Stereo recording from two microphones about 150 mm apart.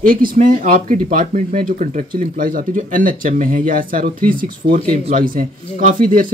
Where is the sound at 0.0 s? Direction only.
70° right (ahead or behind).